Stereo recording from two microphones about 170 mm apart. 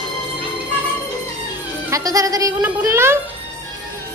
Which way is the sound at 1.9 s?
20° right (ahead or behind).